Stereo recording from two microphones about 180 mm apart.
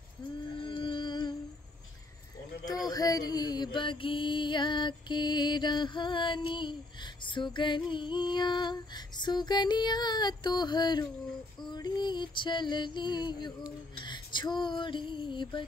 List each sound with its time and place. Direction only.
0.6 s music: 30° left (ahead or behind)
2.9 s mantra: 20° left (ahead or behind)
11.7 s music: 25° left (ahead or behind)
14.0 s a sound: 25° left (ahead or behind)